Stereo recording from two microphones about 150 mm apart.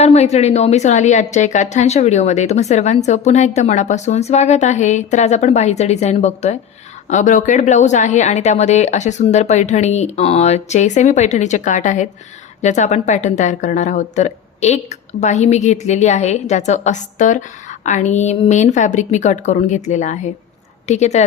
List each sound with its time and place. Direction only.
0.0 s a woman's voice: 45° left (ahead or behind)